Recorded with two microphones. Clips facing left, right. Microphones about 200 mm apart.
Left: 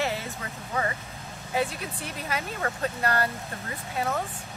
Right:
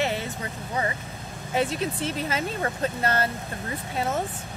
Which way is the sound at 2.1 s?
30° right (ahead or behind).